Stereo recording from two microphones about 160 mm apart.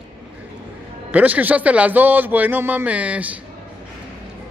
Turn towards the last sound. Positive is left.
turn(degrees=-10)  # may be behind; listen again after turning